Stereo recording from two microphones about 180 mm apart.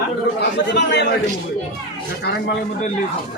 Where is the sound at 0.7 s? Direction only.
75° left (ahead or behind).